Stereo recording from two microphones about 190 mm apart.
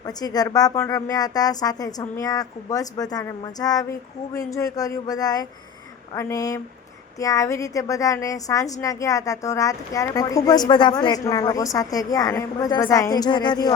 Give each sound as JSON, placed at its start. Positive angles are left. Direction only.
{"t": 0.0, "sound": "a woman's voice", "side_deg": 20}